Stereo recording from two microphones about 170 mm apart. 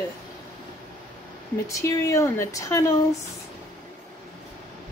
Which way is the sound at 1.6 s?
15° left (ahead or behind).